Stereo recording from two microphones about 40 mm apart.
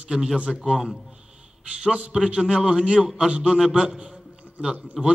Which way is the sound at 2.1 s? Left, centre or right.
Centre.